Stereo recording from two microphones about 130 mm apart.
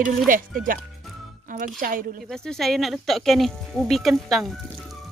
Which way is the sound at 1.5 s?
90° right.